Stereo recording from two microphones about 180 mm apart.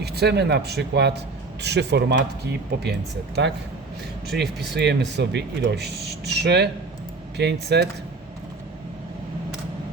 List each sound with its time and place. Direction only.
0.0 s speech: 65° right (ahead or behind)
3.4 s speech: 80° right
4.3 s speech: 65° right (ahead or behind)